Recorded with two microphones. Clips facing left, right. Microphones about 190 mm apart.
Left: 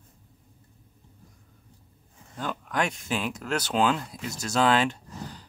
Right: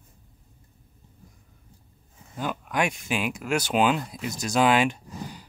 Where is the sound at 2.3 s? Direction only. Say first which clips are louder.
Right 2 dB; 10° right (ahead or behind).